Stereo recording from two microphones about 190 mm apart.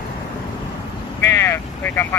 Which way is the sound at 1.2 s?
15° left (ahead or behind).